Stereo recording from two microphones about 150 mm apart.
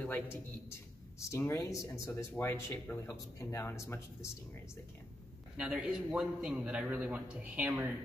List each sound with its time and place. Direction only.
0.0 s speech: 15° left (ahead or behind)
5.6 s a man's voice: 5° right (ahead or behind)